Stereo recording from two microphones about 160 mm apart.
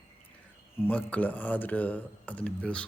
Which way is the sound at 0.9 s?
10° left (ahead or behind).